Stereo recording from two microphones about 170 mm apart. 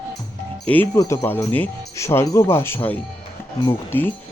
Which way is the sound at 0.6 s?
10° left (ahead or behind).